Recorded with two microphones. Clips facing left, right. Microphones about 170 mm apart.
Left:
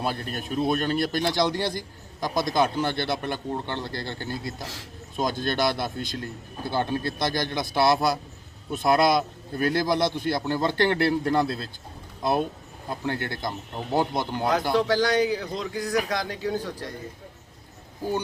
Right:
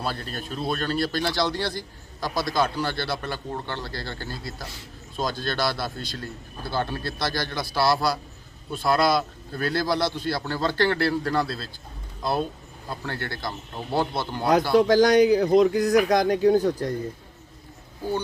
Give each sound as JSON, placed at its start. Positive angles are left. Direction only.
{"t": 0.0, "sound": "a man's voice", "side_deg": 15}
{"t": 14.8, "sound": "speech", "side_deg": -45}